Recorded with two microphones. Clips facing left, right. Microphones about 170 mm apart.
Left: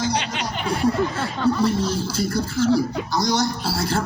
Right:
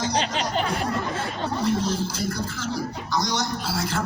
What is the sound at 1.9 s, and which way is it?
Speech, 30° left (ahead or behind).